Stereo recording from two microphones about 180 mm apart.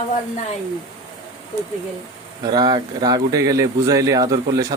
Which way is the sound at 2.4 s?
20° right (ahead or behind).